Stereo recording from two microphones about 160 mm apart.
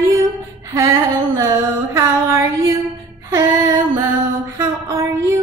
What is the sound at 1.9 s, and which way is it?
Music, 20° right (ahead or behind).